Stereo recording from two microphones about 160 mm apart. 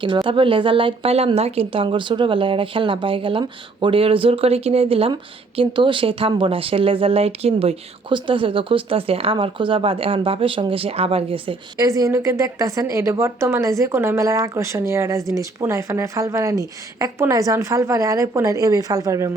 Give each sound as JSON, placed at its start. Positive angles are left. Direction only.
{"t": 0.0, "sound": "speech", "side_deg": -30}
{"t": 11.8, "sound": "speech", "side_deg": -20}